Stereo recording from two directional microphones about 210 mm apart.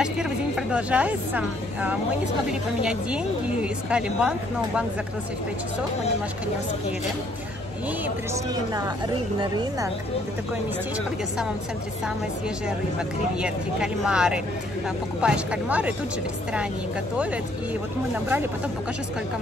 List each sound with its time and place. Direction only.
0.0 s a woman's voice: 5° right (ahead or behind)
9.4 s a woman's voice: 20° right (ahead or behind)
13.4 s a woman's voice: 5° right (ahead or behind)
18.1 s speech: 10° right (ahead or behind)